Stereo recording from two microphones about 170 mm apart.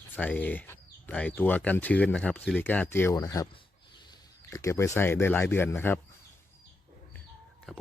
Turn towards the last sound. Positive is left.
turn(degrees=0)  # may be behind; listen again after turning